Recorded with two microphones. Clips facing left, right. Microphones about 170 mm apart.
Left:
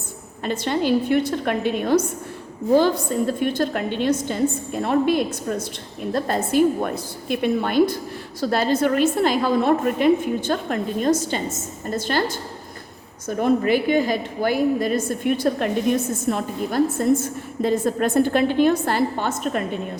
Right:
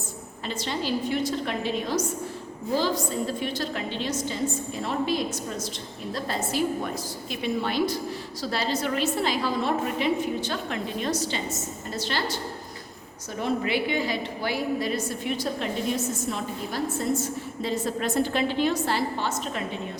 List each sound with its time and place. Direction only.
0.4 s a woman's voice: 55° left (ahead or behind)